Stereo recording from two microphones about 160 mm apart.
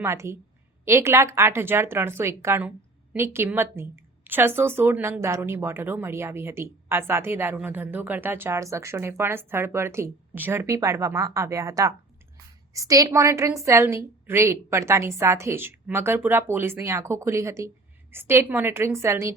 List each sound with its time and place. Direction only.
0.0 s speech: 15° right (ahead or behind)